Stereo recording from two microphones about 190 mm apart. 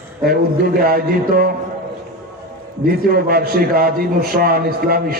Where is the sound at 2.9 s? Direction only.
50° right (ahead or behind).